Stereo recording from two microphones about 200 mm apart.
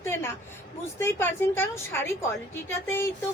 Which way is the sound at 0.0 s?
10° left (ahead or behind).